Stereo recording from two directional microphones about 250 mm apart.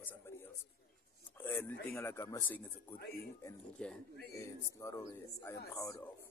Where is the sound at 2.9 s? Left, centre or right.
Left.